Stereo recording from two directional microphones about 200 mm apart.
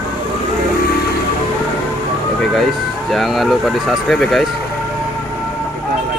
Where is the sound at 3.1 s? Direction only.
Centre (ahead or behind).